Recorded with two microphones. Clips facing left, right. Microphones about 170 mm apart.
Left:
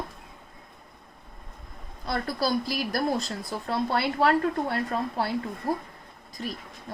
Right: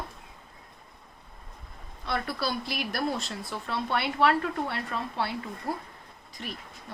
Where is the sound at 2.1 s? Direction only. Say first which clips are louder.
Left 3 dB; 40° left (ahead or behind).